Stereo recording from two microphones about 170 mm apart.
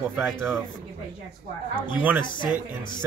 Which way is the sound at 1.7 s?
30° left (ahead or behind).